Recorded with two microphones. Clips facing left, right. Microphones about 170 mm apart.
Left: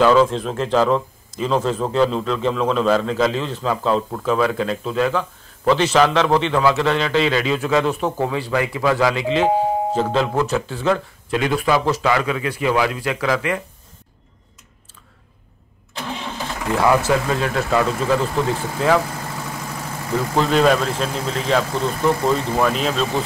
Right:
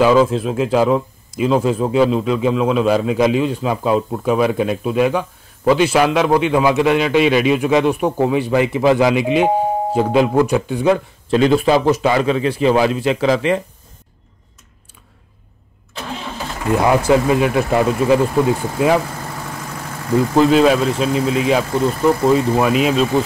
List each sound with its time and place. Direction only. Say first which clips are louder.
0.0 s speech: right 2 dB; 10° right (ahead or behind)
11.2 s a man's voice: right 6 dB; 30° right (ahead or behind)
16.7 s speech: right 3 dB; 20° right (ahead or behind)
20.3 s speech: right 4 dB; 5° right (ahead or behind)